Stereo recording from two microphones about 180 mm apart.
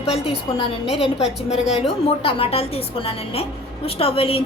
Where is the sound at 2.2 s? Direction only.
30° left (ahead or behind).